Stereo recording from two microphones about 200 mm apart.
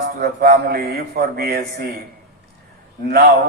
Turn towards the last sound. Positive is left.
turn(degrees=-50)  # may be behind; listen again after turning